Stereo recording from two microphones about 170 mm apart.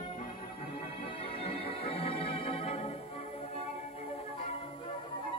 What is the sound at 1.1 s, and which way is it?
Music, 35° left (ahead or behind).